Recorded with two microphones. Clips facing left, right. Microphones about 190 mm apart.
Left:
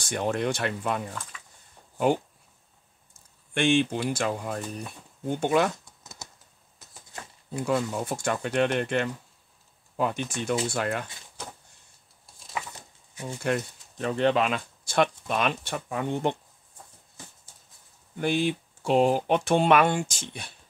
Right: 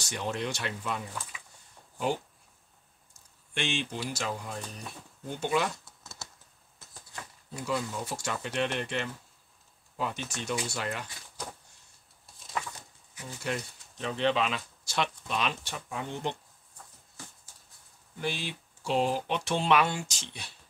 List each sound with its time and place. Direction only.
0.0 s speech: 50° left (ahead or behind)
3.1 s speech: 55° left (ahead or behind)
6.2 s typing: 20° left (ahead or behind)
7.5 s speech: 50° left (ahead or behind)
13.2 s speech: 55° left (ahead or behind)
18.2 s speech: 55° left (ahead or behind)